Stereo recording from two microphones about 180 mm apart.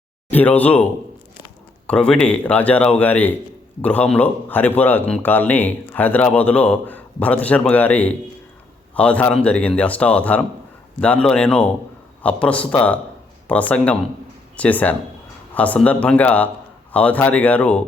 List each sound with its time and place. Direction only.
0.3 s a man's voice: 10° left (ahead or behind)
1.9 s a man's voice: 5° left (ahead or behind)